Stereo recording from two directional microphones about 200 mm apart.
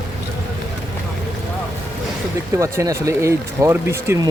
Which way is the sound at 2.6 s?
15° right (ahead or behind).